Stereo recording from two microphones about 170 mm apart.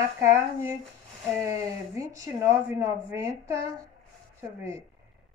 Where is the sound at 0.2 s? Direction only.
15° right (ahead or behind).